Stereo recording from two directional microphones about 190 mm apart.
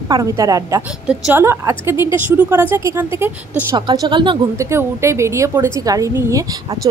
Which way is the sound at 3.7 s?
25° right (ahead or behind).